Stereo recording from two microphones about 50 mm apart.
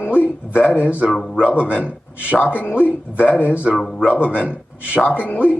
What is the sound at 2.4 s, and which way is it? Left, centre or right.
Speech, left.